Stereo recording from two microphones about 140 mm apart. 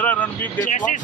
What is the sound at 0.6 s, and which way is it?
Speech, 65° left (ahead or behind).